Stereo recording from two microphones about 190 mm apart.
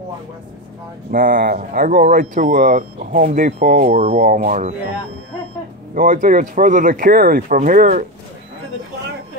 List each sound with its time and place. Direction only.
1.1 s speech: 50° right (ahead or behind)
5.9 s speech: 45° right (ahead or behind)